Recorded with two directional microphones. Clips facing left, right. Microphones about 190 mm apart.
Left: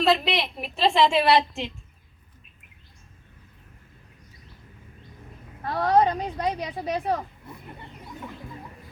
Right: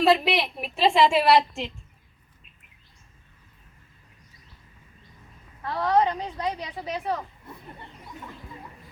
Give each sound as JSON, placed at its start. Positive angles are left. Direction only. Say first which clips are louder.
{"t": 0.0, "sound": "a woman's voice", "louder": "right 2 dB", "side_deg": -5}
{"t": 5.6, "sound": "speech", "louder": "left 2 dB", "side_deg": 40}